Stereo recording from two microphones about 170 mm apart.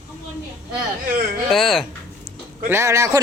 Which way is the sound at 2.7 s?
15° right (ahead or behind).